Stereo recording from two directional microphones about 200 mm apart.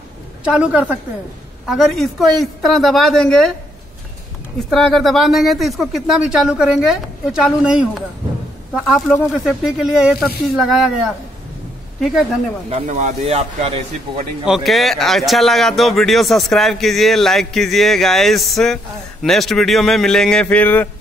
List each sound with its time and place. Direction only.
0.4 s a woman's voice: 5° right (ahead or behind)
4.6 s a man's voice: centre (ahead or behind)
12.6 s speech: 35° right (ahead or behind)
14.4 s a man's voice: centre (ahead or behind)